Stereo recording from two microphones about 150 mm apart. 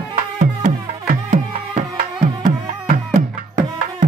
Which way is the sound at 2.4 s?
60° right (ahead or behind).